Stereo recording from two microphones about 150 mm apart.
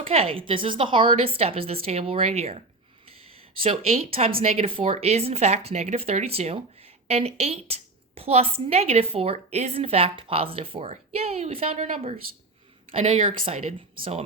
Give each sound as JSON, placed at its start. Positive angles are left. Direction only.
{"t": 0.0, "sound": "a woman's voice", "side_deg": -40}
{"t": 14.0, "sound": "speech", "side_deg": -45}